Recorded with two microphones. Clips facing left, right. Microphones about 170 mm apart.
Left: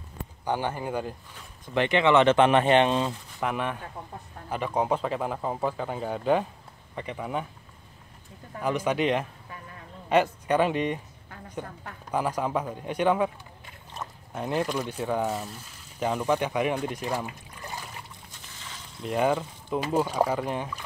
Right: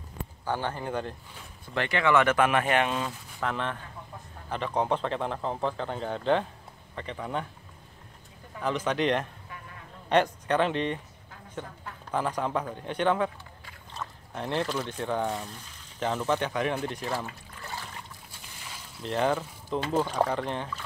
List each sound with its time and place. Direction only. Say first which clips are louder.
0.5 s speech: left 2 dB; 15° left (ahead or behind)
3.3 s speech: left 1 dB; 15° left (ahead or behind)
8.6 s speech: left 1 dB; 10° left (ahead or behind)
12.1 s speech: left 2 dB; 10° left (ahead or behind)
14.0 s a sound: even; 20° left (ahead or behind)
14.3 s speech: left 2 dB; 10° left (ahead or behind)
19.0 s speech: left 2 dB; 10° left (ahead or behind)